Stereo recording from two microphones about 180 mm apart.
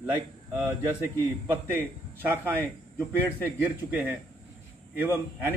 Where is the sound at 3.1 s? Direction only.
10° left (ahead or behind).